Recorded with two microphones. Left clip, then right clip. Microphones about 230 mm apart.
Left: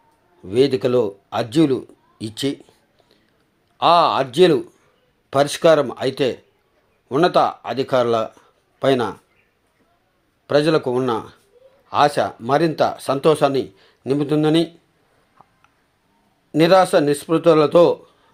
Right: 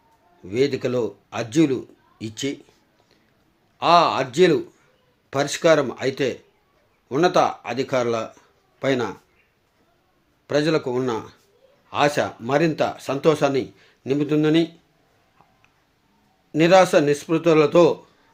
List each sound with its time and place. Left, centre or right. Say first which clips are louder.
0.4 s speech: left 5 dB; centre
3.8 s speech: left 2 dB; centre
10.4 s speech: left 4 dB; centre
16.5 s speech: left 1 dB; centre